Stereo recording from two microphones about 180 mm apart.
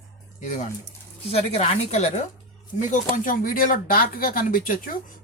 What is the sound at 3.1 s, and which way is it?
Speech, 50° left (ahead or behind).